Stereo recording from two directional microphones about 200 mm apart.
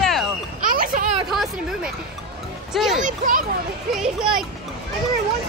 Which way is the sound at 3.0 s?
40° right (ahead or behind).